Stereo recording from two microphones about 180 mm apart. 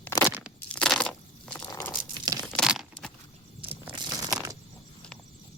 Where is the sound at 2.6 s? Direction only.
Centre (ahead or behind).